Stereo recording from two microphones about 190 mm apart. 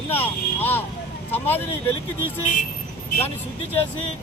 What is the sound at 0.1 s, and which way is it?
Speech, 10° left (ahead or behind).